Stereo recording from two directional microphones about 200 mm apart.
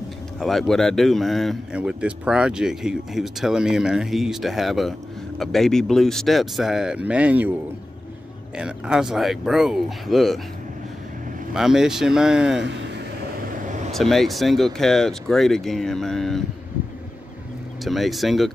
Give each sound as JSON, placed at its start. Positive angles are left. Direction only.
{"t": 0.4, "sound": "a man's voice", "side_deg": 0}
{"t": 8.5, "sound": "a man's voice", "side_deg": -5}
{"t": 11.5, "sound": "a man's voice", "side_deg": 0}
{"t": 13.6, "sound": "vehicle", "side_deg": -40}
{"t": 13.9, "sound": "a man's voice", "side_deg": 0}
{"t": 17.8, "sound": "a man's voice", "side_deg": 0}